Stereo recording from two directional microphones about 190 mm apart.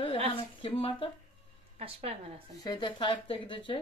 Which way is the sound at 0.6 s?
30° left (ahead or behind).